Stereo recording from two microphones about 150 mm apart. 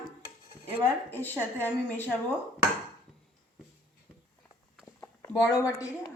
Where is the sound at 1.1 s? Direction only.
15° left (ahead or behind).